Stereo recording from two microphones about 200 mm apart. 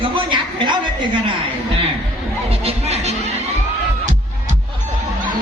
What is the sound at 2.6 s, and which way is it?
Music, 30° right (ahead or behind).